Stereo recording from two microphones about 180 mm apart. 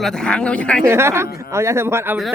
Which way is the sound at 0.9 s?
15° right (ahead or behind).